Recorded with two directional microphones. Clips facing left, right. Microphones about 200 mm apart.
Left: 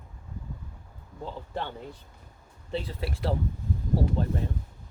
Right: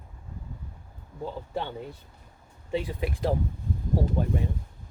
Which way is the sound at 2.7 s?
15° right (ahead or behind).